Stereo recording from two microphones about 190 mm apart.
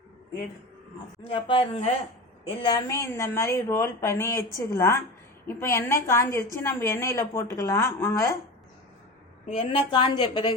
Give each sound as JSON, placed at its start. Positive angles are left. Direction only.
{"t": 1.3, "sound": "speech", "side_deg": 30}
{"t": 2.6, "sound": "a woman's voice", "side_deg": 15}
{"t": 9.6, "sound": "speech", "side_deg": 30}